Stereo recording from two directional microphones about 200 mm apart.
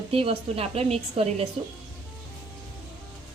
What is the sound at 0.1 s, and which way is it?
A woman's voice, 30° right (ahead or behind).